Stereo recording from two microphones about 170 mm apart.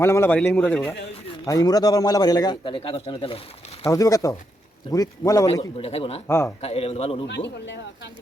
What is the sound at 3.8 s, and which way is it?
A man's voice, 20° left (ahead or behind).